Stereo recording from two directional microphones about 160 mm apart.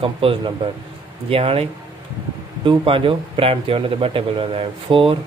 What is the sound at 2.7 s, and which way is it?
Speech, 35° right (ahead or behind).